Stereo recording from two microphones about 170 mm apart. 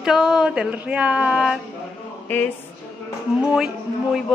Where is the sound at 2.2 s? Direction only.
10° left (ahead or behind).